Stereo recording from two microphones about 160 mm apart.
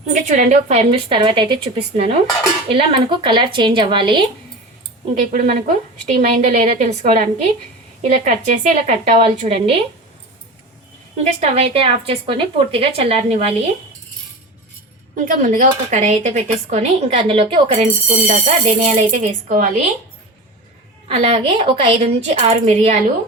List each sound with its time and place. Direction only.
0.1 s a woman's voice: 50° right (ahead or behind); by 4.3 s 30° right (ahead or behind)
5.3 s speech: 55° right (ahead or behind); by 9.8 s 35° right (ahead or behind)
11.2 s a woman's voice: 40° right (ahead or behind)
15.1 s speech: 55° right (ahead or behind)
21.1 s a woman's voice: 40° right (ahead or behind)